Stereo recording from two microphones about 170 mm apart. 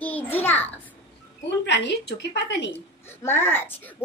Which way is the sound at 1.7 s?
90° left.